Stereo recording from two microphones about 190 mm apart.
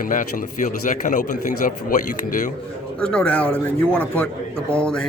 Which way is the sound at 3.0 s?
5° left (ahead or behind).